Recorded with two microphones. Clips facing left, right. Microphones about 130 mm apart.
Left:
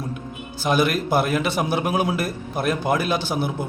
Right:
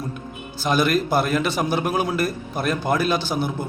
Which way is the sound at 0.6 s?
5° left (ahead or behind).